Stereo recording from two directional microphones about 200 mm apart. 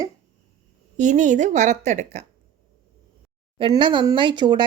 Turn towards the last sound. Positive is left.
turn(degrees=-20)  # may be behind; listen again after turning